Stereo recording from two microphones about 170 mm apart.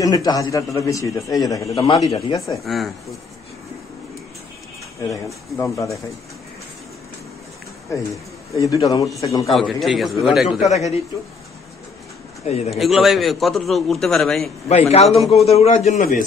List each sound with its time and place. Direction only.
0.0 s a man's voice: 20° left (ahead or behind)
2.5 s a man's voice: centre (ahead or behind)
5.1 s speech: 15° left (ahead or behind)
7.9 s a man's voice: 15° left (ahead or behind)
9.5 s a man's voice: centre (ahead or behind)
10.6 s a man's voice: 40° left (ahead or behind)
12.6 s a man's voice: centre (ahead or behind)
14.7 s a man's voice: 35° left (ahead or behind)
15.1 s a man's voice: centre (ahead or behind)
15.4 s a man's voice: 40° left (ahead or behind)
16.0 s a man's voice: 55° left (ahead or behind)